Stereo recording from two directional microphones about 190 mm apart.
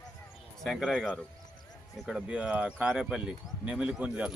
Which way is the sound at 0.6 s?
5° left (ahead or behind).